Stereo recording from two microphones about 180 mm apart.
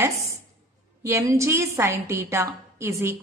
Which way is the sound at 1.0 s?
15° right (ahead or behind).